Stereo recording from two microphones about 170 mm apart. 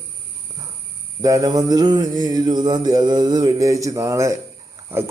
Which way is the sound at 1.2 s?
20° right (ahead or behind).